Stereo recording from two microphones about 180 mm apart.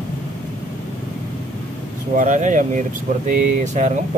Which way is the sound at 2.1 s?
45° right (ahead or behind).